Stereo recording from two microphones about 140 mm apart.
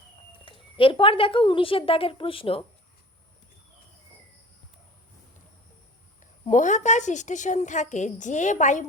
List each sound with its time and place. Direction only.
0.4 s a woman's voice: 40° left (ahead or behind)
6.5 s a woman's voice: 60° left (ahead or behind)